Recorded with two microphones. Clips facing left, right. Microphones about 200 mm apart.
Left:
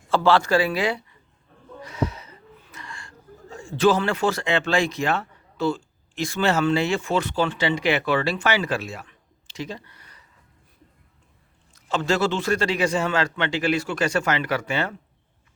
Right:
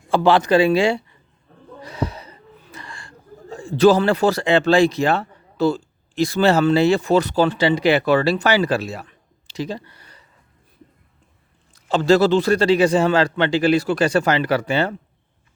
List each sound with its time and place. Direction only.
0.1 s speech: 15° right (ahead or behind)
11.7 s speech: 35° right (ahead or behind)